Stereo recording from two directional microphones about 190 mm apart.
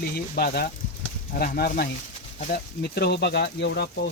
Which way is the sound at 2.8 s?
60° left (ahead or behind).